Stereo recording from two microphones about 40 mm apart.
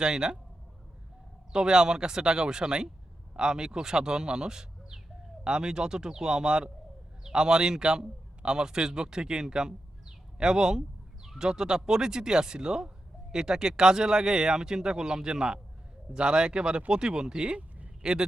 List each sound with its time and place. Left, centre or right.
0.0 s speech: centre
1.5 s a man's voice: centre
17.6 s a sound: right
18.0 s speech: centre